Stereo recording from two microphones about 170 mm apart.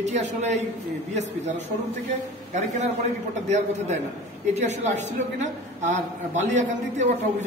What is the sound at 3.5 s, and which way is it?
A man's voice, 40° right (ahead or behind).